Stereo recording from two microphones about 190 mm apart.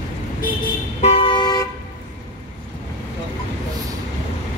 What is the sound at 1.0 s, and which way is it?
Toot, 30° left (ahead or behind).